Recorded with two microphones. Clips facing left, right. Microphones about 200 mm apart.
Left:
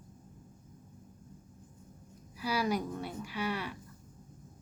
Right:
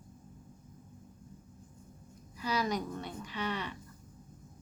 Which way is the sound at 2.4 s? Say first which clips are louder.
Left 1 dB; 10° left (ahead or behind).